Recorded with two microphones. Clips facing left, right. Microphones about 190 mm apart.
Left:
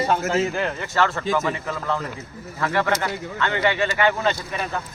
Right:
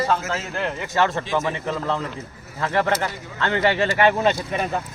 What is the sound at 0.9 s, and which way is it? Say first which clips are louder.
Speech: even; 20° right (ahead or behind).